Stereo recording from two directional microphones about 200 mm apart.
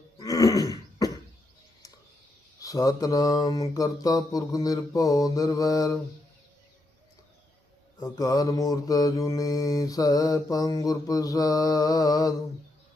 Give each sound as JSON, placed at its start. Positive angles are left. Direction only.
{"t": 0.2, "sound": "throat clearing", "side_deg": 15}
{"t": 2.6, "sound": "mantra", "side_deg": 15}
{"t": 7.9, "sound": "mantra", "side_deg": 15}